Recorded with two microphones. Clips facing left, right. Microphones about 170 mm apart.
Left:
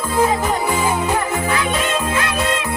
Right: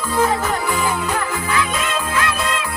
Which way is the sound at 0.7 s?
25° left (ahead or behind).